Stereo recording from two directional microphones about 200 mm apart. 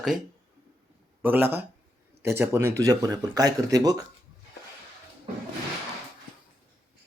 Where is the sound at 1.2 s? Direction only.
10° right (ahead or behind).